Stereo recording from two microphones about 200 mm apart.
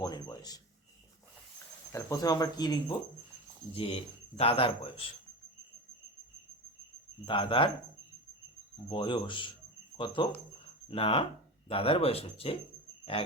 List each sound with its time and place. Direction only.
0.0 s speech: 20° left (ahead or behind)
1.9 s speech: 15° left (ahead or behind)
7.3 s speech: 25° left (ahead or behind)
8.9 s speech: 25° left (ahead or behind)